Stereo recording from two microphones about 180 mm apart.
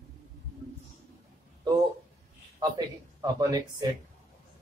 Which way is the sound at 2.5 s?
20° right (ahead or behind).